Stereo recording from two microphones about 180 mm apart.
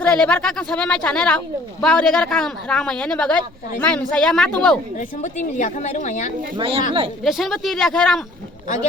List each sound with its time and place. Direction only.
0.0 s a man's voice: 5° left (ahead or behind)
4.9 s a woman's voice: 45° left (ahead or behind)
6.6 s speech: 30° right (ahead or behind)
7.3 s a man's voice: centre (ahead or behind)